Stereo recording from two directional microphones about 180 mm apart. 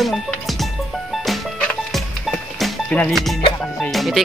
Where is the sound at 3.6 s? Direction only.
Centre (ahead or behind).